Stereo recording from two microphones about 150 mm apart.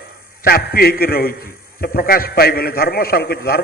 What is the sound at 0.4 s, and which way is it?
A man's voice, 85° left.